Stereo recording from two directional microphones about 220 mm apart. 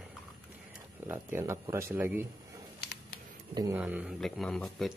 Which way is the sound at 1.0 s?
10° right (ahead or behind).